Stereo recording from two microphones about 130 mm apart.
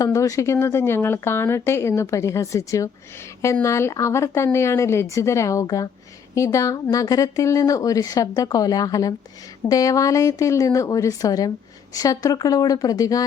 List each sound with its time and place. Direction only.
0.0 s speech: 25° left (ahead or behind)